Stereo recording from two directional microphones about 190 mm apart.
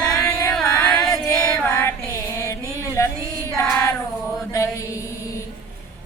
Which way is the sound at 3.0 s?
15° left (ahead or behind).